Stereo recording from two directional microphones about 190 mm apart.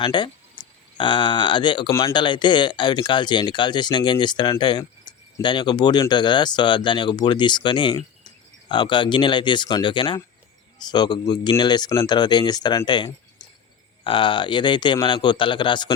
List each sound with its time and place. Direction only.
0.0 s speech: 25° left (ahead or behind)